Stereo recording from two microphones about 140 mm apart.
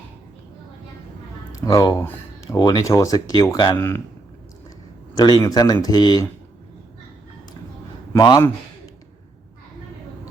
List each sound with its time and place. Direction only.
1.5 s speech: 25° left (ahead or behind)
5.1 s speech: 30° left (ahead or behind)
8.1 s speech: 25° left (ahead or behind)